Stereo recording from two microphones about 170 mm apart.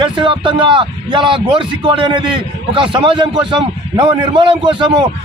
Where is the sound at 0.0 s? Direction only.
30° right (ahead or behind).